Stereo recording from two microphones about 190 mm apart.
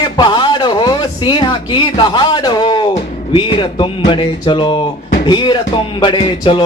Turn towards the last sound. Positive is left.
turn(degrees=25)  # may be behind; listen again after turning